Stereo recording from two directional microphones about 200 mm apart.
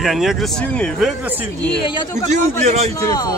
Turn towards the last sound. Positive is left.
turn(degrees=20)  # may be behind; listen again after turning